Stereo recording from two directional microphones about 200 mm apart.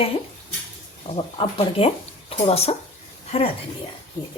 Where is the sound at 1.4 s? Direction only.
30° left (ahead or behind).